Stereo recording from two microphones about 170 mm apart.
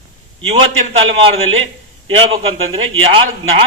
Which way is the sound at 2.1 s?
35° right (ahead or behind).